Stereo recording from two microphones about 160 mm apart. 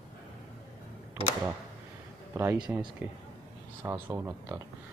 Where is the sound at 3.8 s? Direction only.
15° right (ahead or behind).